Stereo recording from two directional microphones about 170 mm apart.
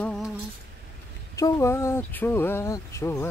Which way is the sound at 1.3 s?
20° left (ahead or behind).